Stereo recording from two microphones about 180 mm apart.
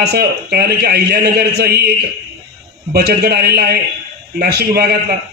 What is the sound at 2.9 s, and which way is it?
A man's voice, 60° right (ahead or behind).